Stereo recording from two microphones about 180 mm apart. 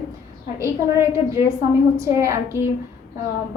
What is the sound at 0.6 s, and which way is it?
A woman's voice, 15° right (ahead or behind).